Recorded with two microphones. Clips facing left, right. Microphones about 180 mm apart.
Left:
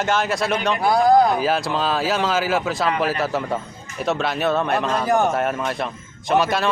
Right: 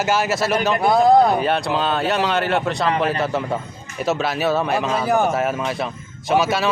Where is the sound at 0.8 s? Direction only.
25° right (ahead or behind).